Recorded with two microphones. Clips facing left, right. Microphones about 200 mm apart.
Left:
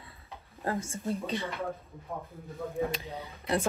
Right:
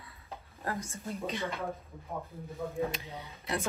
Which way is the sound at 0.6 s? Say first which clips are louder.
Left 5 dB; 30° left (ahead or behind).